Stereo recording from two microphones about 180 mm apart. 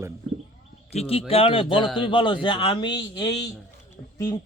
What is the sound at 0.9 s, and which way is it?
A man's voice, 30° left (ahead or behind).